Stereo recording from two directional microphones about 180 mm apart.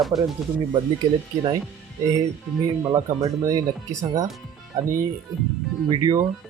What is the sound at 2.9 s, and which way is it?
Speech, 20° right (ahead or behind).